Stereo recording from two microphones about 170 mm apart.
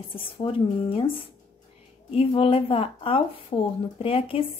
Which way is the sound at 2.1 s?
35° left (ahead or behind).